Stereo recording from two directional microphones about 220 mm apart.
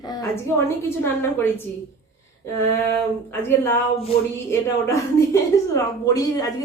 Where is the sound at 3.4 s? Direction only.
10° left (ahead or behind).